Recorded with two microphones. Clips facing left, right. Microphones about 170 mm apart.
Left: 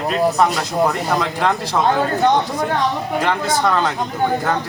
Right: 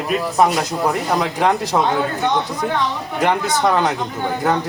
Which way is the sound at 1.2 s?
15° right (ahead or behind).